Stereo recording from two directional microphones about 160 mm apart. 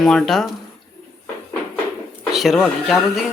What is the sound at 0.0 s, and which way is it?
Speech, 5° left (ahead or behind).